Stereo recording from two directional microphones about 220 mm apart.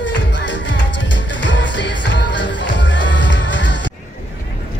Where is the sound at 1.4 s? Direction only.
55° left (ahead or behind).